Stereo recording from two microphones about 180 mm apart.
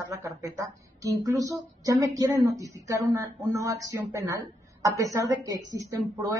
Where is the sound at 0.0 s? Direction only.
15° right (ahead or behind).